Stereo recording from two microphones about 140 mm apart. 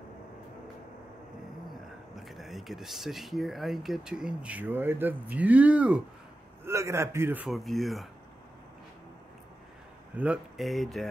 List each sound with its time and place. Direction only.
2.1 s speech: centre (ahead or behind)
6.6 s a man's voice: 20° right (ahead or behind)
7.4 s speech: centre (ahead or behind)
10.1 s speech: 10° right (ahead or behind)